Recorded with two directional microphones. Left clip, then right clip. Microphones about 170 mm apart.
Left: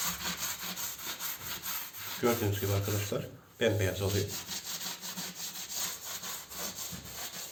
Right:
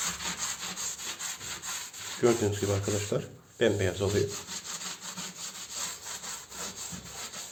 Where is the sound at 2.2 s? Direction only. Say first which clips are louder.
Right 5 dB; 45° right (ahead or behind).